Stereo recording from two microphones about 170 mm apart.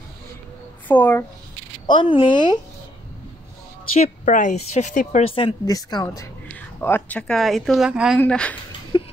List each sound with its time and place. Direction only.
0.8 s speech: 10° left (ahead or behind)
1.9 s speech: 30° left (ahead or behind)
4.0 s a woman's voice: 50° left (ahead or behind)
5.3 s speech: 30° left (ahead or behind)
6.8 s speech: 10° left (ahead or behind)
8.2 s speech: 5° left (ahead or behind)